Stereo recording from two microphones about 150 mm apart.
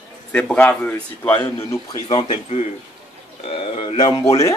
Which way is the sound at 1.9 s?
30° left (ahead or behind).